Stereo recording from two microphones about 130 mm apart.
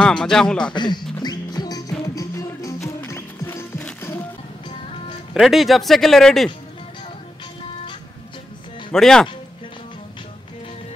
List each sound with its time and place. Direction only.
0.0 s speech: 5° left (ahead or behind)
0.7 s speech: 35° left (ahead or behind)
1.2 s music: 30° left (ahead or behind); by 4.2 s 15° left (ahead or behind)
5.3 s speech: centre (ahead or behind)
8.9 s speech: 5° left (ahead or behind)